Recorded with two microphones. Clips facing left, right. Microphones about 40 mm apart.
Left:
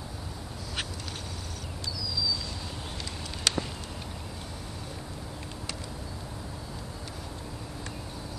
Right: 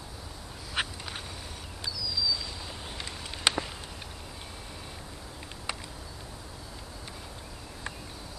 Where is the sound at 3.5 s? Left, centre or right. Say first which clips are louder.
Right 2 dB; centre.